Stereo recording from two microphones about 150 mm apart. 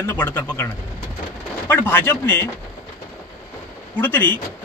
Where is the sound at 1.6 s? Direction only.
15° left (ahead or behind).